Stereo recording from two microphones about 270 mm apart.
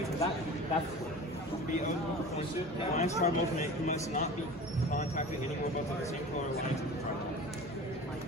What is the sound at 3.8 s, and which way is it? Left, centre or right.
Speech, left.